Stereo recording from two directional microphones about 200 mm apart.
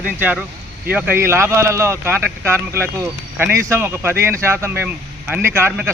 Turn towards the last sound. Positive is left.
turn(degrees=-10)  # may be behind; listen again after turning